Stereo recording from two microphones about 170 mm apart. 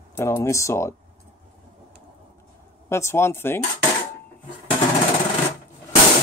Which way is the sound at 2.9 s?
15° left (ahead or behind).